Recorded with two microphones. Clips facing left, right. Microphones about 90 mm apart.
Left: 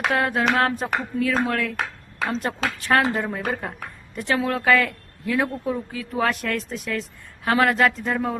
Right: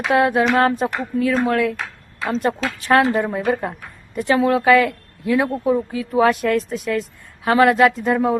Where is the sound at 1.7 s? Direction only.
65° left (ahead or behind).